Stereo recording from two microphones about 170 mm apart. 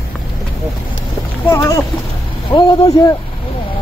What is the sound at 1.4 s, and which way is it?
Speech, 20° left (ahead or behind).